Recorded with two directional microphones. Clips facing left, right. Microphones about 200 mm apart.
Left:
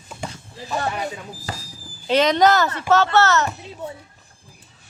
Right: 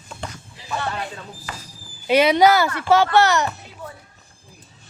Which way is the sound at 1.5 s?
35° left (ahead or behind).